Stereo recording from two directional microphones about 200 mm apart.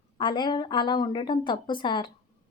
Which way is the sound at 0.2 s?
25° left (ahead or behind).